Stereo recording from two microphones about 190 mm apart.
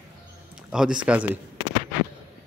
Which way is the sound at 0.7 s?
5° right (ahead or behind).